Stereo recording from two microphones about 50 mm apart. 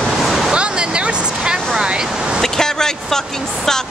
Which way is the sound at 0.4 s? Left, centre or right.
Centre.